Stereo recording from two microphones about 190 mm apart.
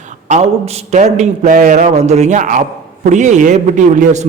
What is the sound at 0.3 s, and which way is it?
A man's voice, 35° right (ahead or behind).